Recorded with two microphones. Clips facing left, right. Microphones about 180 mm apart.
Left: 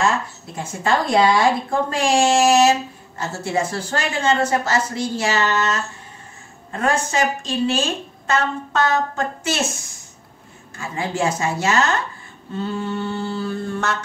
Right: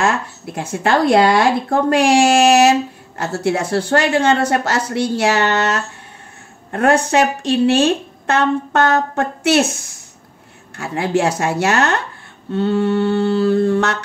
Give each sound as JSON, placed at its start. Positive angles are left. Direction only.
{"t": 0.0, "sound": "a woman's voice", "side_deg": -70}
{"t": 12.5, "sound": "mantra", "side_deg": -70}